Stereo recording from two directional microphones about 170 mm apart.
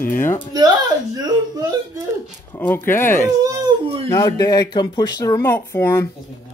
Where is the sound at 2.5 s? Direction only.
10° left (ahead or behind).